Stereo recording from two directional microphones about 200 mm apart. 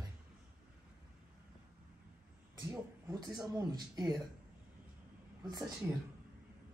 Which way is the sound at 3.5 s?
20° right (ahead or behind).